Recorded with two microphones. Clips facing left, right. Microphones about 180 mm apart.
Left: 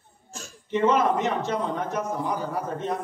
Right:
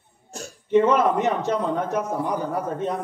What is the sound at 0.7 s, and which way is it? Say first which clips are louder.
A man's voice: right 4 dB; 55° right (ahead or behind).